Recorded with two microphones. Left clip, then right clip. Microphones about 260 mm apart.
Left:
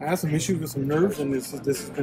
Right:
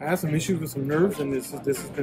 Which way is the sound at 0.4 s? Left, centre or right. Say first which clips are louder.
Left 1 dB; centre.